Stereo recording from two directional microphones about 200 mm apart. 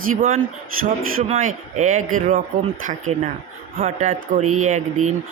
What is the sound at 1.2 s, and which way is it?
Speech, 35° right (ahead or behind).